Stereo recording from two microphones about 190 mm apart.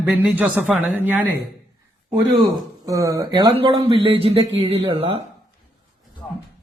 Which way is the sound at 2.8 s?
15° right (ahead or behind).